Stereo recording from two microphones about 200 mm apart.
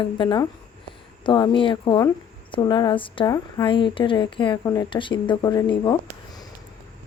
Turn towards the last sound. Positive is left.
turn(degrees=25)  # may be behind; listen again after turning